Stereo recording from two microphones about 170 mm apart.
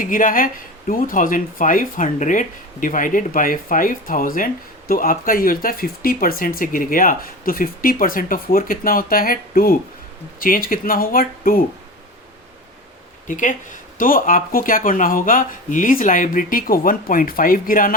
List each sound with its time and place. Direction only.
0.0 s speech: 50° left (ahead or behind)
13.2 s speech: 50° left (ahead or behind)